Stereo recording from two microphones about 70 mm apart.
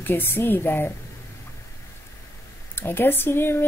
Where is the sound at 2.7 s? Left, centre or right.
Left.